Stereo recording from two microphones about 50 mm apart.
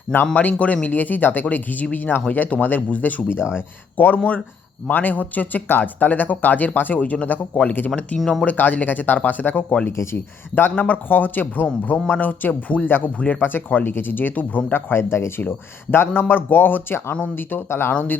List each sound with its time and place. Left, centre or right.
0.3 s speech: left
7.9 s speech: left
8.2 s speech: centre
8.4 s speech: left
9.9 s speech: left
10.5 s speech: left
14.8 s a man's voice: left